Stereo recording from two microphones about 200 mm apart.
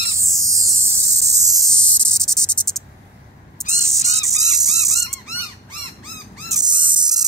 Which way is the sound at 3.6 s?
5° left (ahead or behind).